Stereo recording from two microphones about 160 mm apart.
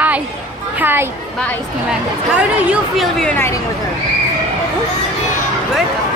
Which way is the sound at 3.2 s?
10° left (ahead or behind).